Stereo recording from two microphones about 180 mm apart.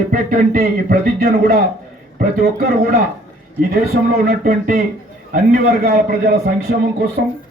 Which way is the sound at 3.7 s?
50° right (ahead or behind).